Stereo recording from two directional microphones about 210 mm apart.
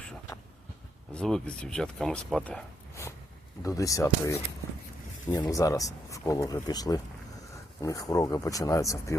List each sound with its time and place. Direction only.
1.1 s speech: 5° left (ahead or behind)